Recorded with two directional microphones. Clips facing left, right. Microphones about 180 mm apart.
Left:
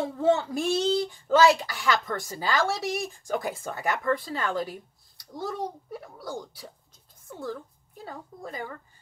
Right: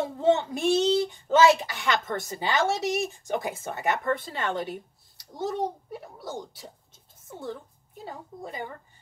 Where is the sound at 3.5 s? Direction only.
20° right (ahead or behind).